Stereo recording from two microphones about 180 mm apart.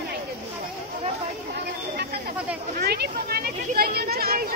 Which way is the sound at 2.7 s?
60° right (ahead or behind).